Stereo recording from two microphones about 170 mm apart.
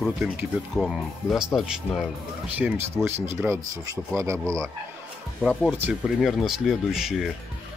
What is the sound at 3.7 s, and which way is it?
Speech, 20° right (ahead or behind).